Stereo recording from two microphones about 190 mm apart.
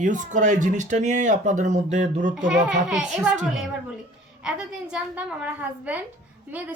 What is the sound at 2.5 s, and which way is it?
Speech, 5° right (ahead or behind).